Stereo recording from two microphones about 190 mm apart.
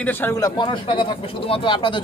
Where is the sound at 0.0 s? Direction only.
10° left (ahead or behind).